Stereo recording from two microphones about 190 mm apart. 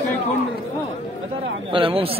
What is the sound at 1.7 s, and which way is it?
Speech, 30° right (ahead or behind).